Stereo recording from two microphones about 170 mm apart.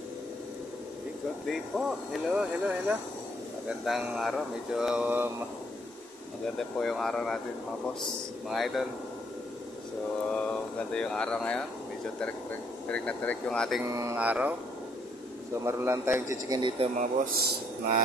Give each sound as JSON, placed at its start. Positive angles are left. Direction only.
{"t": 1.5, "sound": "speech", "side_deg": 0}
{"t": 6.8, "sound": "speech", "side_deg": 5}
{"t": 8.5, "sound": "speech", "side_deg": 0}
{"t": 10.9, "sound": "speech", "side_deg": 5}
{"t": 12.8, "sound": "speech", "side_deg": 10}
{"t": 13.8, "sound": "a man's voice", "side_deg": -15}
{"t": 15.6, "sound": "a man's voice", "side_deg": -15}
{"t": 16.9, "sound": "speech", "side_deg": -65}